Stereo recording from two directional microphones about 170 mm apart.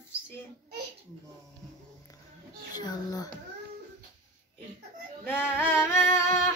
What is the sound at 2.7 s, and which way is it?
Speech, 25° left (ahead or behind).